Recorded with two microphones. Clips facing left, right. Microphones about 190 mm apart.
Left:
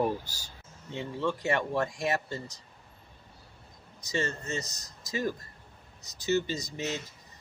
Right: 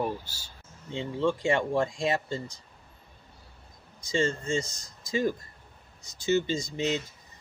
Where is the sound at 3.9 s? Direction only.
25° right (ahead or behind).